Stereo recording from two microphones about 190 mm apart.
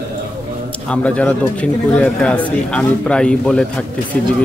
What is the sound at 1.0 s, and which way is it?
Speech, 5° left (ahead or behind).